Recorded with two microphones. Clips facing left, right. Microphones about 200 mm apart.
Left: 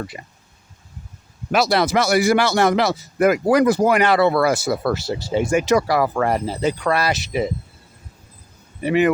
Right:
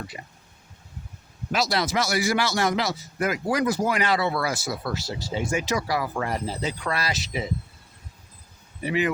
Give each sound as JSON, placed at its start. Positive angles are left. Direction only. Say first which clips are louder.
{"t": 0.1, "sound": "a man's voice", "louder": "left 3 dB", "side_deg": 55}
{"t": 1.5, "sound": "a man's voice", "louder": "left 7 dB", "side_deg": 60}
{"t": 8.8, "sound": "a man's voice", "louder": "left 8 dB", "side_deg": 60}